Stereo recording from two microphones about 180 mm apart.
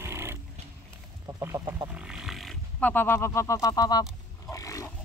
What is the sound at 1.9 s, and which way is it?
Roaring cats, 5° right (ahead or behind).